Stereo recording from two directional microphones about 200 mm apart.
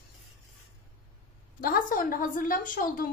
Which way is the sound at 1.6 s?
45° left (ahead or behind).